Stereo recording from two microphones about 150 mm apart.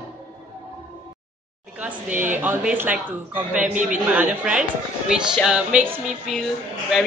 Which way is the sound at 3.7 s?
55° right (ahead or behind).